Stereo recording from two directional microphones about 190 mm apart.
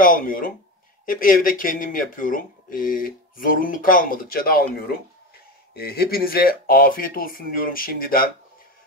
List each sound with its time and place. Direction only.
0.0 s speech: 45° left (ahead or behind)